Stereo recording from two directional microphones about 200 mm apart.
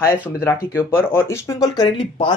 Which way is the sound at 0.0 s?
10° left (ahead or behind).